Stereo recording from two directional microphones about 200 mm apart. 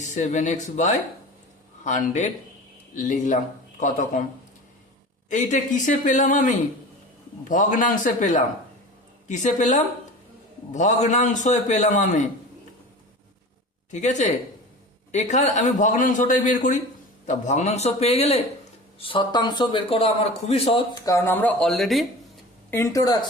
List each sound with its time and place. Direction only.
0.0 s a man's voice: 35° left (ahead or behind)
5.3 s a man's voice: 40° left (ahead or behind)
13.9 s a man's voice: 35° left (ahead or behind); by 22.0 s centre (ahead or behind)
22.7 s a woman's voice: 15° left (ahead or behind)